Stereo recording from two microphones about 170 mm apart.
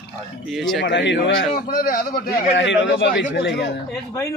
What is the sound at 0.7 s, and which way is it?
A man's voice, 90° left.